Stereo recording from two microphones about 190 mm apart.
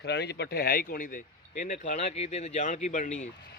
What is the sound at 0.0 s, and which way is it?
Speech, 65° left (ahead or behind).